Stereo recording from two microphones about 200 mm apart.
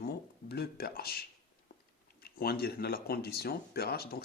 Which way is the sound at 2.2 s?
50° left (ahead or behind).